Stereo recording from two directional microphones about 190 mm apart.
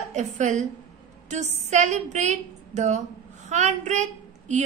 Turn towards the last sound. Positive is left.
turn(degrees=-40)  # may be behind; listen again after turning